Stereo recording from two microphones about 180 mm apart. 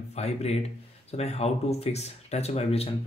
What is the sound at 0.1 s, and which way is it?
Speech, 35° left (ahead or behind).